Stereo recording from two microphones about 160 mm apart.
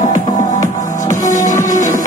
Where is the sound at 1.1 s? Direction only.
55° left (ahead or behind).